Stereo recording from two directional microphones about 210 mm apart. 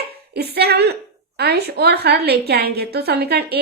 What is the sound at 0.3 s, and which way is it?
A woman's voice, 50° right (ahead or behind).